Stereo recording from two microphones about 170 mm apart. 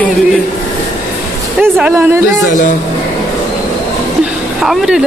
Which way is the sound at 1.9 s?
15° right (ahead or behind).